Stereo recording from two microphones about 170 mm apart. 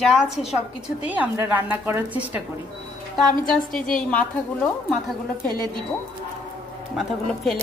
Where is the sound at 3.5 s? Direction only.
5° left (ahead or behind).